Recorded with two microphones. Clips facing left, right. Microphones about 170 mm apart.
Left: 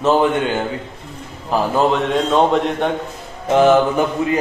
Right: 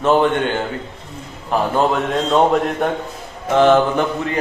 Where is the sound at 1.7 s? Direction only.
Centre (ahead or behind).